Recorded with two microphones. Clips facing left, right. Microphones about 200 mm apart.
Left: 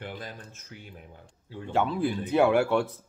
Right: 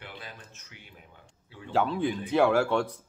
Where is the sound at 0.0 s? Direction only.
45° left (ahead or behind).